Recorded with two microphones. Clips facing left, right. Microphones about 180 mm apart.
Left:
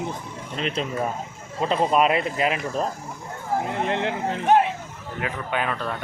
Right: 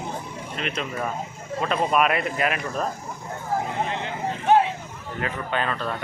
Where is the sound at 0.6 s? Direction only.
30° left (ahead or behind).